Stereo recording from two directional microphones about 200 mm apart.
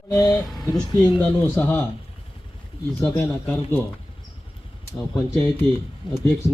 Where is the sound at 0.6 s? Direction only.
20° left (ahead or behind).